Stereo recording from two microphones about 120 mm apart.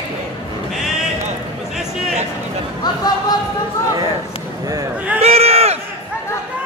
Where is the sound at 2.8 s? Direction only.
35° left (ahead or behind).